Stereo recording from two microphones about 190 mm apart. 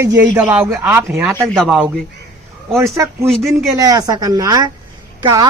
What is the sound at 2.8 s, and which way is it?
Speech, 15° right (ahead or behind).